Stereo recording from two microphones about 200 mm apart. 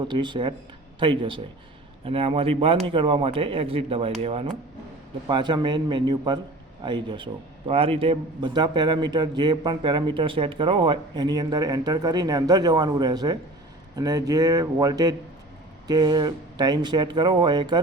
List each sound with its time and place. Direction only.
0.1 s a man's voice: 25° right (ahead or behind)